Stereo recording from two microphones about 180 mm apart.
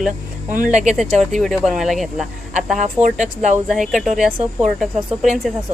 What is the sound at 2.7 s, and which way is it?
Speech, 45° right (ahead or behind).